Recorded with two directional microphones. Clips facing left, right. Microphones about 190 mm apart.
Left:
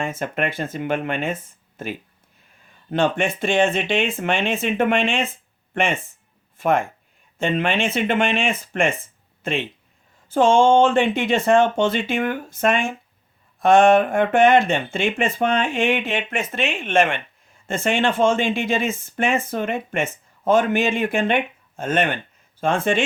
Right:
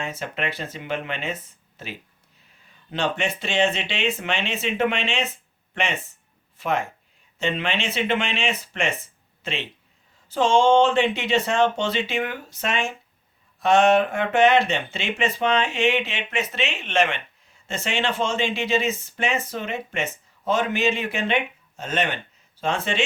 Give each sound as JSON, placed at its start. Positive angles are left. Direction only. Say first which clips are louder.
{"t": 0.0, "sound": "speech", "louder": "left 5 dB", "side_deg": 50}